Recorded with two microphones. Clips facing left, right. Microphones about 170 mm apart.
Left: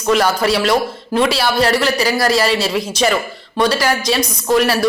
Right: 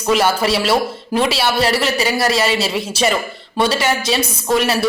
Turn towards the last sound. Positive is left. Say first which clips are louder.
# left 2 dB
turn(degrees=0)  # may be behind; listen again after turning